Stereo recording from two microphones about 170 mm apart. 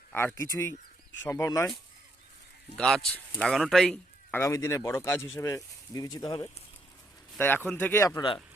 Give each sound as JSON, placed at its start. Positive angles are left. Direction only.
{"t": 0.1, "sound": "speech", "side_deg": 10}
{"t": 2.7, "sound": "speech", "side_deg": 5}
{"t": 7.3, "sound": "speech", "side_deg": 10}